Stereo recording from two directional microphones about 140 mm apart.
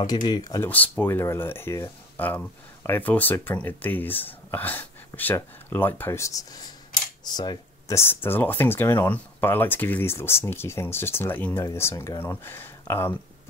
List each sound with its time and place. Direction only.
0.3 s speech: 25° left (ahead or behind)
0.7 s speech: 10° left (ahead or behind); by 8.0 s 30° left (ahead or behind)
8.0 s speech: 15° left (ahead or behind)